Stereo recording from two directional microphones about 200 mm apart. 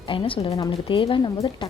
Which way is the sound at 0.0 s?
25° left (ahead or behind).